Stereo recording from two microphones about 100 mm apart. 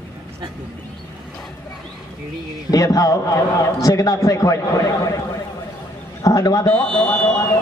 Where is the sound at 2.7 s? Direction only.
35° left (ahead or behind).